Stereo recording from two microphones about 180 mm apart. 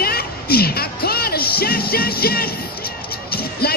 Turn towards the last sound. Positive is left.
turn(degrees=60)  # may be behind; listen again after turning